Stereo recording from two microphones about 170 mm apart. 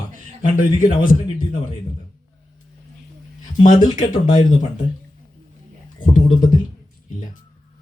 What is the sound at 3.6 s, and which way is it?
Speech, 50° left (ahead or behind).